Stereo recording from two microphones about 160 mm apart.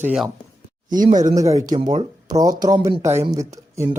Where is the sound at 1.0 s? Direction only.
50° right (ahead or behind).